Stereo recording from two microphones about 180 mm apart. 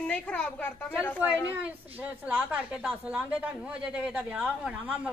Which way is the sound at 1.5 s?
10° right (ahead or behind).